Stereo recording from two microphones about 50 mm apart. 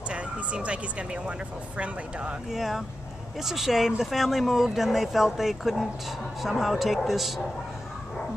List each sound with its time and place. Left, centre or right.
0.1 s speech: right
2.5 s speech: centre